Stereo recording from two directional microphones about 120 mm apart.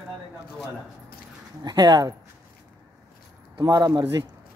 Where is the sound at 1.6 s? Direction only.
35° right (ahead or behind).